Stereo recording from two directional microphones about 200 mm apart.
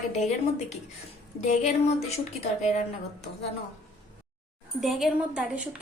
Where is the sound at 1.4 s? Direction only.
35° left (ahead or behind).